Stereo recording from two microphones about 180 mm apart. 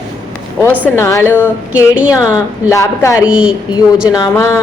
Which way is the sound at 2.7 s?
15° left (ahead or behind).